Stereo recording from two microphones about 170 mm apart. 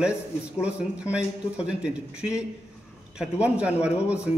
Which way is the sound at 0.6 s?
5° right (ahead or behind).